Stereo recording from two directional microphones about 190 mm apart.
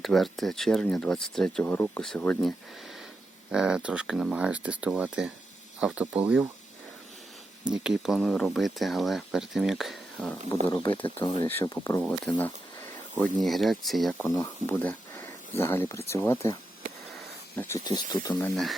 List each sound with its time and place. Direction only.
0.0 s speech: centre (ahead or behind)
3.5 s speech: 5° right (ahead or behind)
7.7 s speech: 5° right (ahead or behind)
11.0 s speech: 25° left (ahead or behind)
12.0 s speech: 5° left (ahead or behind)
17.2 s a sound: 10° left (ahead or behind)
17.8 s speech: 20° left (ahead or behind)
18.5 s speech: centre (ahead or behind)